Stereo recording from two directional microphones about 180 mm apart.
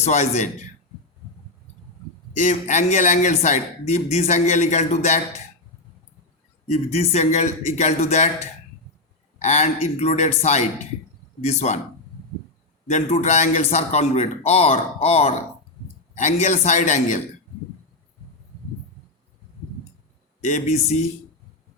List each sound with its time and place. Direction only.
0.0 s speech: 40° left (ahead or behind)
2.3 s speech: 45° left (ahead or behind)
6.7 s speech: 35° left (ahead or behind)
9.4 s speech: 40° left (ahead or behind)
12.9 s a man's voice: 40° left (ahead or behind)
20.4 s speech: 40° left (ahead or behind)